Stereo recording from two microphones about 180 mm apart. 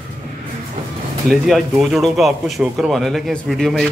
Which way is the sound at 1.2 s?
Centre (ahead or behind).